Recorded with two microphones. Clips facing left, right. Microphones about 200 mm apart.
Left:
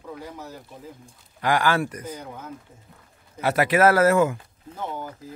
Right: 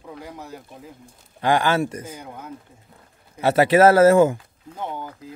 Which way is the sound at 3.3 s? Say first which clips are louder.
Right 5 dB; 25° right (ahead or behind).